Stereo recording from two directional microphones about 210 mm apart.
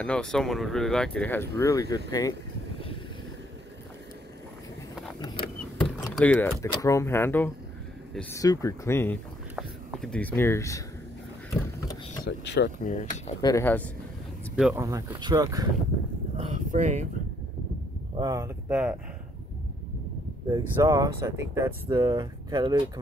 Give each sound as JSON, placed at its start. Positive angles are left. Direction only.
{"t": 0.0, "sound": "speech", "side_deg": 5}
{"t": 5.2, "sound": "a sound", "side_deg": 25}
{"t": 6.0, "sound": "speech", "side_deg": 5}
{"t": 12.3, "sound": "speech", "side_deg": 50}
{"t": 12.9, "sound": "speech", "side_deg": 35}
{"t": 13.4, "sound": "speech", "side_deg": 15}
{"t": 14.5, "sound": "speech", "side_deg": -5}
{"t": 16.3, "sound": "a sound", "side_deg": -35}
{"t": 18.1, "sound": "speech", "side_deg": -20}
{"t": 20.5, "sound": "speech", "side_deg": -15}